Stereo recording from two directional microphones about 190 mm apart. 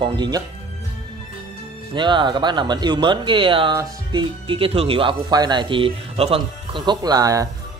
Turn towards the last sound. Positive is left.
turn(degrees=-20)  # may be behind; listen again after turning